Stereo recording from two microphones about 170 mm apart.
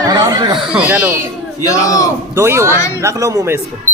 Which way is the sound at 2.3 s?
15° right (ahead or behind).